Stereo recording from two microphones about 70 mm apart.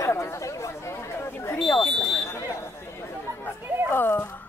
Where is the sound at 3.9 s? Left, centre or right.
Left.